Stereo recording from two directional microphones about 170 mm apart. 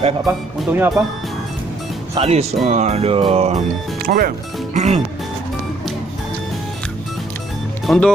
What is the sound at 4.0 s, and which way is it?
Speech, 60° right (ahead or behind).